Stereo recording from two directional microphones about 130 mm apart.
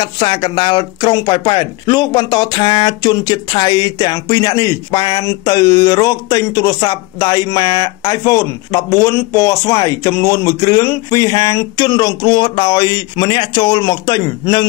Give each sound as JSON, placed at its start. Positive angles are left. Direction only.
{"t": 0.0, "sound": "speech", "side_deg": 40}